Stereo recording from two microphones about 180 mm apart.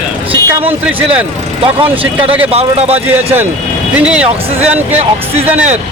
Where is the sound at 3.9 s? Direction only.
5° right (ahead or behind).